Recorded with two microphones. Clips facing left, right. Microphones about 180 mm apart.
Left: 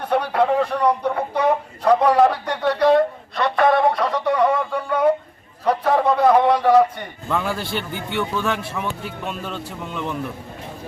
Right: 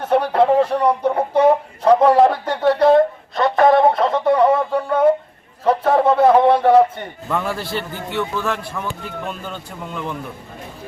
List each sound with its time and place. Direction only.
0.1 s speech: 30° right (ahead or behind)
3.5 s a sound: 25° right (ahead or behind)
5.6 s speech: 30° right (ahead or behind)
7.3 s speech: centre (ahead or behind)